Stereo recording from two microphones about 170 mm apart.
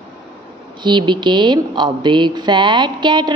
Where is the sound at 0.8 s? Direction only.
25° right (ahead or behind).